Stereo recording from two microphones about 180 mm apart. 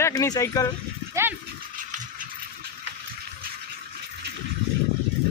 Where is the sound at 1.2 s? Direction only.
15° right (ahead or behind).